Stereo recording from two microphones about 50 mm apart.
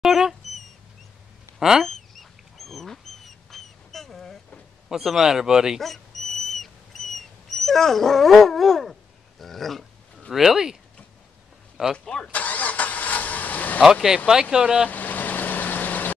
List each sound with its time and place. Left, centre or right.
0.0 s dog: centre
1.6 s rodents: centre
1.9 s fowl: centre
3.4 s duck: centre
4.8 s speech: centre
5.8 s a sound: centre
9.4 s speech: centre
10.3 s speech: centre
12.0 s speech: centre
12.3 s vehicle: left
14.0 s speech: centre
14.9 s vehicle: left